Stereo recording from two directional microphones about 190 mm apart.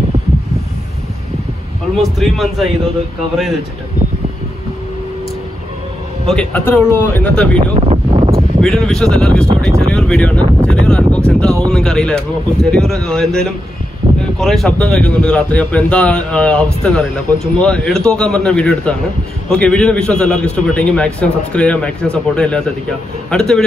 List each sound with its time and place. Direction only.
2.0 s speech: centre (ahead or behind)
6.2 s speech: 5° left (ahead or behind)
7.7 s wind noise: 30° right (ahead or behind)
8.5 s speech: 5° left (ahead or behind)
10.4 s speech: 25° right (ahead or behind)
10.9 s speech: 5° left (ahead or behind)